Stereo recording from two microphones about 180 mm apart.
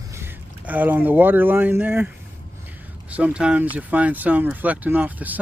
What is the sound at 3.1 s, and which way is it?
Speech, 5° right (ahead or behind).